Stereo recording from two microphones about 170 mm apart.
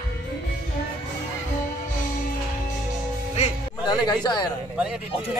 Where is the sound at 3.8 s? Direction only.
25° left (ahead or behind).